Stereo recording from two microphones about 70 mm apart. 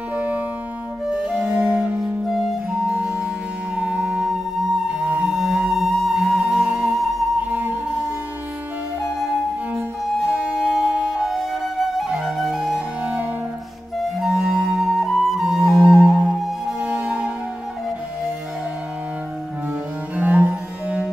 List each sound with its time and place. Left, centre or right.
0.1 s music: right
1.6 s music: centre
2.2 s music: centre
7.5 s music: right
10.3 s music: centre
11.2 s flute: centre
13.0 s music: right
14.2 s flute: centre
15.8 s music: right
16.1 s music: centre
20.2 s cello: right